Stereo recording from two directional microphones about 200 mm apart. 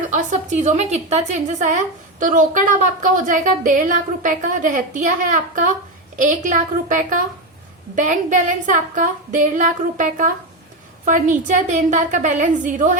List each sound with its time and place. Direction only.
0.1 s a woman's voice: 35° right (ahead or behind)